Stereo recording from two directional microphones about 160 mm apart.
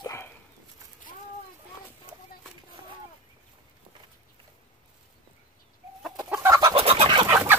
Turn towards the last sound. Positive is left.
turn(degrees=-15)  # may be behind; listen again after turning